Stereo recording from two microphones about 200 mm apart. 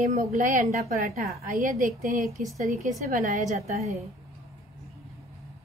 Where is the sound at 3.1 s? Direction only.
35° right (ahead or behind).